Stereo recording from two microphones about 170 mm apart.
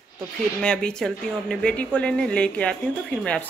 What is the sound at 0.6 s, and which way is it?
Speech, 5° left (ahead or behind).